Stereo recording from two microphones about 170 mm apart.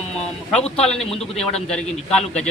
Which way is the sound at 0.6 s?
35° left (ahead or behind).